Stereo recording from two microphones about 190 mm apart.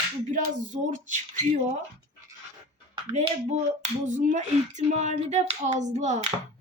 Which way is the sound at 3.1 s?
35° right (ahead or behind).